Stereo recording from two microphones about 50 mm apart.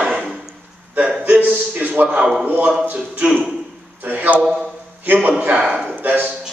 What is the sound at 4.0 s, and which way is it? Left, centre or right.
Speech, right.